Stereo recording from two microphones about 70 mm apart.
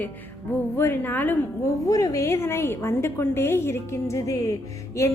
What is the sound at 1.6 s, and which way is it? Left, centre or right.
A woman's voice, left.